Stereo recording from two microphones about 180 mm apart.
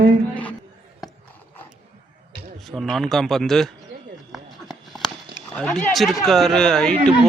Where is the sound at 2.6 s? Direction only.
Centre (ahead or behind).